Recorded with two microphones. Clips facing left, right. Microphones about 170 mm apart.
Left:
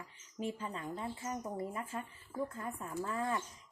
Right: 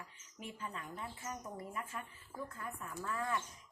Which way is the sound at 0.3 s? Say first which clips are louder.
Left 7 dB; 30° left (ahead or behind).